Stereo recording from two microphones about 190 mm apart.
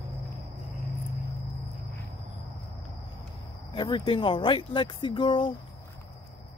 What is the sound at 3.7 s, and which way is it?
Speech, 25° left (ahead or behind).